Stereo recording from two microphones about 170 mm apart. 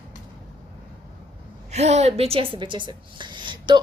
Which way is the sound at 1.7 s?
40° right (ahead or behind).